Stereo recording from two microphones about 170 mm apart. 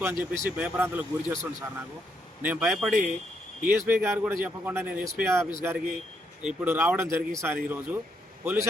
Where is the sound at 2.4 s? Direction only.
10° right (ahead or behind).